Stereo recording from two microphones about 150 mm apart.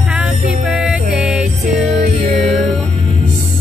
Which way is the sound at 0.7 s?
5° right (ahead or behind).